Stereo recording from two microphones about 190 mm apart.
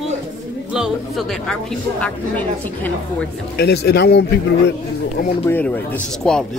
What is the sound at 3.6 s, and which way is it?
Speech, 60° left (ahead or behind).